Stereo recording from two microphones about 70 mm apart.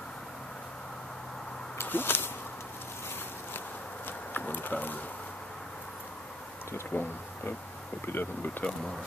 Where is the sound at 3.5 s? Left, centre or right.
Left.